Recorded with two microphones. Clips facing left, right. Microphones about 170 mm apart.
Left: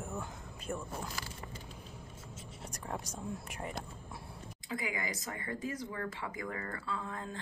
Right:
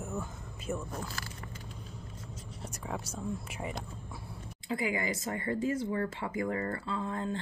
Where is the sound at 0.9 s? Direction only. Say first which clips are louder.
Right 2 dB; 10° left (ahead or behind).